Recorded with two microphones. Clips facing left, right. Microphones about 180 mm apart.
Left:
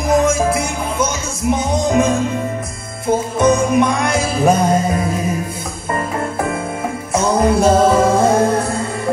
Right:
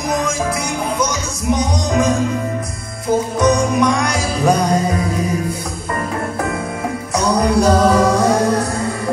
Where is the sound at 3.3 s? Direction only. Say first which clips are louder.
Left 3 dB; 25° left (ahead or behind).